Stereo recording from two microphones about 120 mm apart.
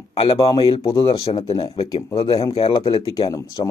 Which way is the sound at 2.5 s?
45° left (ahead or behind).